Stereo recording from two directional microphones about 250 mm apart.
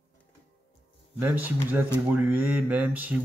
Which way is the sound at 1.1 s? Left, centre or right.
Centre.